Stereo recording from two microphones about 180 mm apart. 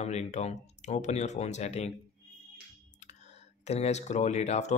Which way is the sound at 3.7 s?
35° left (ahead or behind).